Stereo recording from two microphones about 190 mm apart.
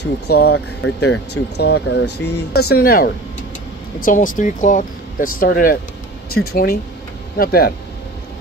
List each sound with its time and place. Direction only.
0.0 s speech: 60° left (ahead or behind)